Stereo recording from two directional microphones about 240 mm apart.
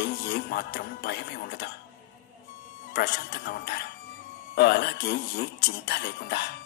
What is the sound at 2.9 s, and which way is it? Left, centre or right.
Speech, left.